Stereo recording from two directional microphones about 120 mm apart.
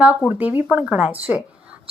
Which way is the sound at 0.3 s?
15° right (ahead or behind).